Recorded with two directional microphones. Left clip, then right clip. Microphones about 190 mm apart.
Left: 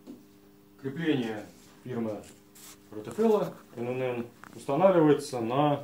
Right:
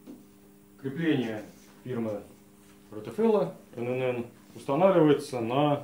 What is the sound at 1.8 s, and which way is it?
Speech, 10° right (ahead or behind).